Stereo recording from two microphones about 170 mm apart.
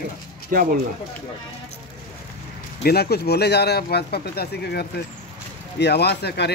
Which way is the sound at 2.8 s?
70° left (ahead or behind).